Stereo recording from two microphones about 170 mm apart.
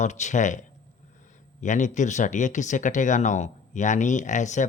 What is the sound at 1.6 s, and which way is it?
Speech, 45° left (ahead or behind).